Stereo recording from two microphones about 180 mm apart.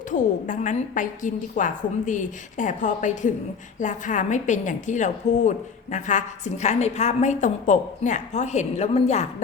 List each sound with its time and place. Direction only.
0.1 s a woman's voice: 45° left (ahead or behind)